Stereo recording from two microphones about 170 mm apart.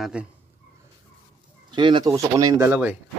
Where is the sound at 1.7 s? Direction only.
25° right (ahead or behind).